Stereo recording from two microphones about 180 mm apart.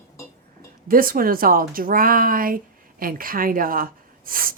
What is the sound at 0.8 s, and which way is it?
Speech, 50° right (ahead or behind).